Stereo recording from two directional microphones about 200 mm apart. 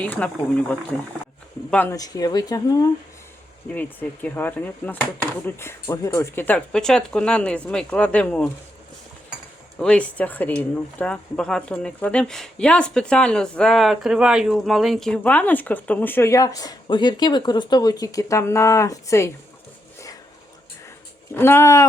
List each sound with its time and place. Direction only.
0.0 s speech: 5° left (ahead or behind)
3.7 s speech: 10° left (ahead or behind)
9.7 s speech: 5° left (ahead or behind)
21.3 s speech: 10° left (ahead or behind)